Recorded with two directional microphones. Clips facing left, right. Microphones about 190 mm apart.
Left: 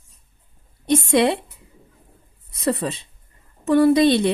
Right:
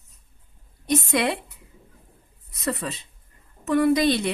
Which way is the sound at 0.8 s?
25° left (ahead or behind).